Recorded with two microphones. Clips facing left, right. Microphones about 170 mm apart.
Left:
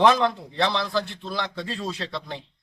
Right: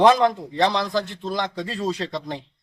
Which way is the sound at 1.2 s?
40° right (ahead or behind).